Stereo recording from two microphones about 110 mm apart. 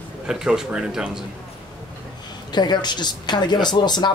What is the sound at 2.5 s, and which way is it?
Speech, 40° left (ahead or behind).